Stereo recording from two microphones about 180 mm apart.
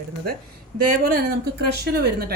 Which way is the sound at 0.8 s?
55° right (ahead or behind).